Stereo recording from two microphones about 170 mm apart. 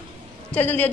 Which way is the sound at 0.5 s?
10° left (ahead or behind).